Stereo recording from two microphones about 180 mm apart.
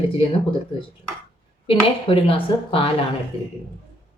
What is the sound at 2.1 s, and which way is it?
Speech, 30° left (ahead or behind).